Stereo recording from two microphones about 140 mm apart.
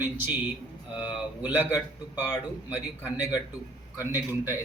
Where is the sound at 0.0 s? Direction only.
15° right (ahead or behind).